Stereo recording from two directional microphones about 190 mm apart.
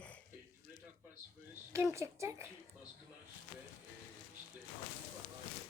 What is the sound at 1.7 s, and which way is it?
Speech, 15° right (ahead or behind).